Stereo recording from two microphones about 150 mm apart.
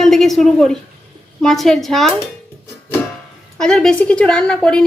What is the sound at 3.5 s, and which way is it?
A woman's voice, 5° left (ahead or behind).